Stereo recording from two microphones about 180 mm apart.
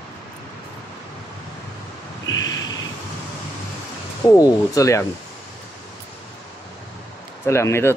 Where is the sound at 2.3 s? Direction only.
20° left (ahead or behind).